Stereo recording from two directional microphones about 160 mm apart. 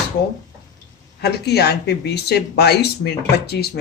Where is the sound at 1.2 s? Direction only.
90° left.